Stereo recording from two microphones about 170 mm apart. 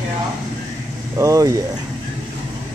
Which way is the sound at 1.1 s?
20° right (ahead or behind).